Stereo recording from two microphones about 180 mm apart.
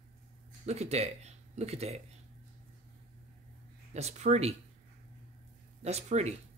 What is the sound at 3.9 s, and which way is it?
Speech, 40° right (ahead or behind).